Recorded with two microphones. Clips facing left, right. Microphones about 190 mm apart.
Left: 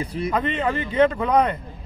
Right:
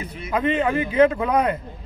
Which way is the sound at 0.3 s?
5° right (ahead or behind).